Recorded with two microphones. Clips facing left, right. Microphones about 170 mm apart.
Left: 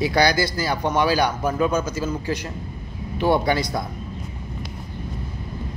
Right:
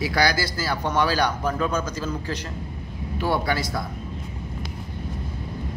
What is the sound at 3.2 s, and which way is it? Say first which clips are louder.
Speech: left 5 dB; 20° left (ahead or behind).